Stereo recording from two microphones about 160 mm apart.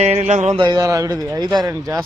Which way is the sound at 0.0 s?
45° right (ahead or behind).